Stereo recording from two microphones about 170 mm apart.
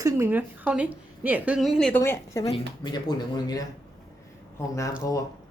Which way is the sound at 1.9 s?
15° left (ahead or behind).